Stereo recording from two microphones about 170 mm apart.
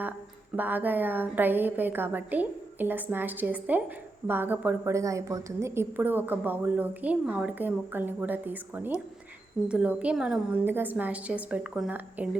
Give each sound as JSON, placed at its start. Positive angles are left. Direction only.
{"t": 0.5, "sound": "a woman's voice", "side_deg": -10}